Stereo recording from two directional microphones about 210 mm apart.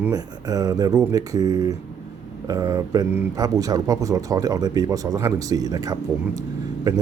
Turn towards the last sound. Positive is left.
turn(degrees=-15)  # may be behind; listen again after turning